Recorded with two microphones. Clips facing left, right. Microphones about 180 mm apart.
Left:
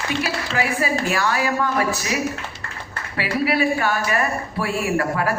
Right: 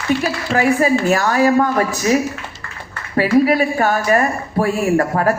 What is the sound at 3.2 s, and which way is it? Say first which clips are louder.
Speech: right 7 dB; 45° right (ahead or behind).